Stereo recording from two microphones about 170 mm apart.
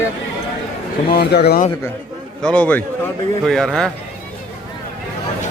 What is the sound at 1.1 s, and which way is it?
Speech, 70° left (ahead or behind).